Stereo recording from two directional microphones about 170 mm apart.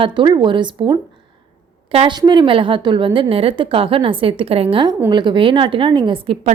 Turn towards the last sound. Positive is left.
turn(degrees=-30)  # may be behind; listen again after turning